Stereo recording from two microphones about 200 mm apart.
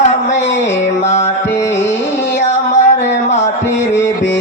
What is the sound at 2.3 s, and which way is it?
Female singing, 35° left (ahead or behind).